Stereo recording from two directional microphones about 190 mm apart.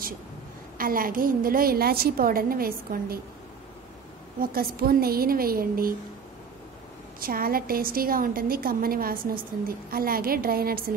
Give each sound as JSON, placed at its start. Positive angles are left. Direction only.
{"t": 0.7, "sound": "a woman's voice", "side_deg": -50}
{"t": 4.4, "sound": "a woman's voice", "side_deg": -50}
{"t": 7.2, "sound": "a woman's voice", "side_deg": -50}